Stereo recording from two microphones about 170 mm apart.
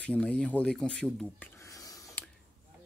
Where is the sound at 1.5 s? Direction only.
20° left (ahead or behind).